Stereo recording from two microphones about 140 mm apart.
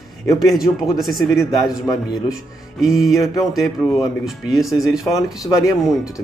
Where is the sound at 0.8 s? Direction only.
Centre (ahead or behind).